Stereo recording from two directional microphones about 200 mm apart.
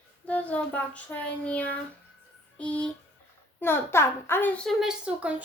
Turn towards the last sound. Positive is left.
turn(degrees=-5)  # may be behind; listen again after turning